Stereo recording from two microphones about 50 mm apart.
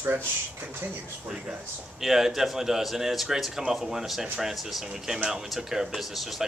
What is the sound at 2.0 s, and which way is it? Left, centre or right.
Speech, centre.